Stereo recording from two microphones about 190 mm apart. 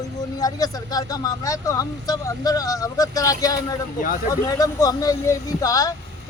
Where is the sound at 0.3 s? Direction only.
20° left (ahead or behind).